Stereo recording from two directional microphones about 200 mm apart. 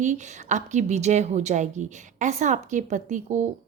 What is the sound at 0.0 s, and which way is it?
A woman's voice, 35° right (ahead or behind).